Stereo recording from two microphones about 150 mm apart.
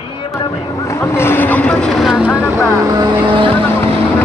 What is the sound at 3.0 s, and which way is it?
Vehicle, 35° right (ahead or behind).